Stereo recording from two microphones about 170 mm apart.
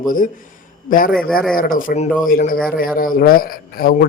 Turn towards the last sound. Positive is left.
turn(degrees=60)  # may be behind; listen again after turning